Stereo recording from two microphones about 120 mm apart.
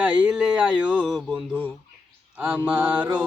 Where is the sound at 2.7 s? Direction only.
10° right (ahead or behind).